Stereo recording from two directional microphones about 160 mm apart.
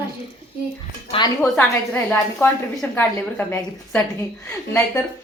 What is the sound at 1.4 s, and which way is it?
Speech, 10° left (ahead or behind).